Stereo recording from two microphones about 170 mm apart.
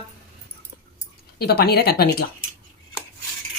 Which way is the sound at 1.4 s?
70° left (ahead or behind).